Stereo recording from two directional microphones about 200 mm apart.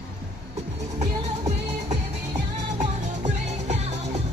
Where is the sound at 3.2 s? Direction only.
35° right (ahead or behind).